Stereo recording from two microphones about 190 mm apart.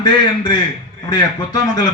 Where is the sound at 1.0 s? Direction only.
20° left (ahead or behind).